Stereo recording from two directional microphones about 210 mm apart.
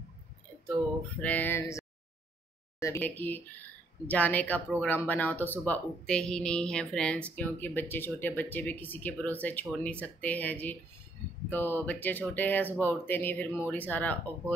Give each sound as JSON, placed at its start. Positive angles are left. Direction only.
{"t": 1.2, "sound": "speech", "side_deg": 10}